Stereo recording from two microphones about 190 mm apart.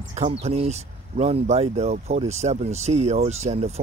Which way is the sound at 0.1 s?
35° right (ahead or behind).